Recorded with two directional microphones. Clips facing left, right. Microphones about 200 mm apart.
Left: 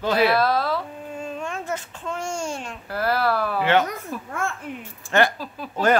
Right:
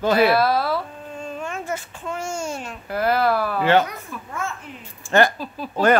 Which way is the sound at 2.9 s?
20° right (ahead or behind).